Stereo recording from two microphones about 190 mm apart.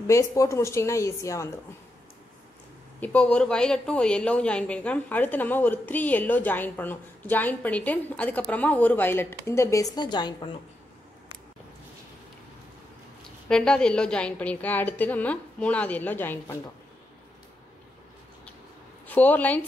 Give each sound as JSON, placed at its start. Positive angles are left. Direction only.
{"t": 0.0, "sound": "a woman's voice", "side_deg": 15}
{"t": 3.0, "sound": "a woman's voice", "side_deg": 5}
{"t": 13.5, "sound": "a woman's voice", "side_deg": 5}
{"t": 19.0, "sound": "a woman's voice", "side_deg": 10}